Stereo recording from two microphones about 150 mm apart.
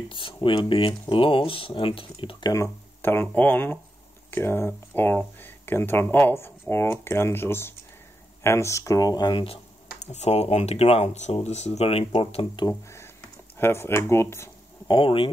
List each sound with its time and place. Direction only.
0.1 s speech: 35° left (ahead or behind)
2.5 s speech: 15° left (ahead or behind); by 9.6 s 35° left (ahead or behind)
9.9 s speech: 50° left (ahead or behind)
12.6 s speech: 20° left (ahead or behind)
14.9 s speech: 35° left (ahead or behind)